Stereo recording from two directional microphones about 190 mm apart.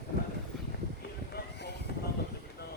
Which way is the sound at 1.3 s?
60° left (ahead or behind).